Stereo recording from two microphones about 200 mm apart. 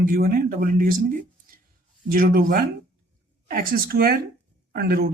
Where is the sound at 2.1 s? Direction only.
45° right (ahead or behind).